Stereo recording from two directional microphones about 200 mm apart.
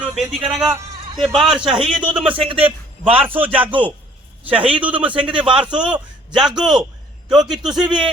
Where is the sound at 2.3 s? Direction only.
25° right (ahead or behind).